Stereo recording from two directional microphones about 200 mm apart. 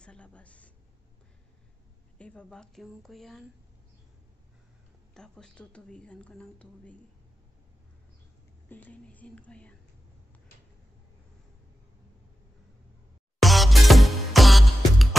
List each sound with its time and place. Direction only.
0.0 s a sound: 5° left (ahead or behind)
2.1 s a woman's voice: 5° left (ahead or behind)
5.1 s a woman's voice: 5° left (ahead or behind)
8.6 s speech: 10° left (ahead or behind)
13.4 s music: centre (ahead or behind)